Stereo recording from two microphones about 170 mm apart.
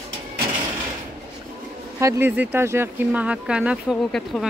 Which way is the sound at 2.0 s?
15° right (ahead or behind).